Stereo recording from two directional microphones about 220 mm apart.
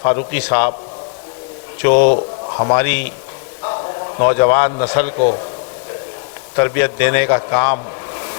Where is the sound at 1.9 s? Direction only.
40° left (ahead or behind).